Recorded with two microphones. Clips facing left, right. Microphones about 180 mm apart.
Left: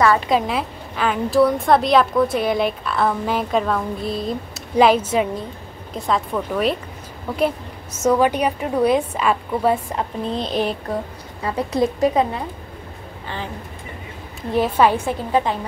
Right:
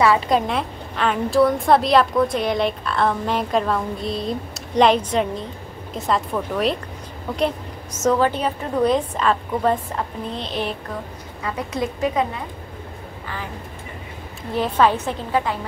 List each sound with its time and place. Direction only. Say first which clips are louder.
0.0 s a woman's voice: even; centre (ahead or behind)
10.3 s a woman's voice: left 5 dB; 40° left (ahead or behind)
14.8 s a woman's voice: even; 10° left (ahead or behind)